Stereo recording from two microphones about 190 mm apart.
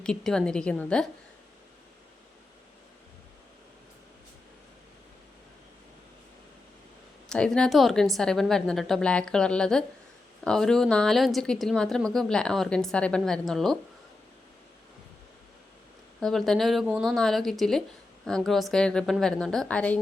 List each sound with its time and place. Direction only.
0.0 s speech: 5° left (ahead or behind)
7.3 s speech: 5° left (ahead or behind)
16.2 s speech: centre (ahead or behind)